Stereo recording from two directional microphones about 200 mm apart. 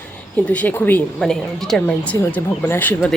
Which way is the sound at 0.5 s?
10° left (ahead or behind).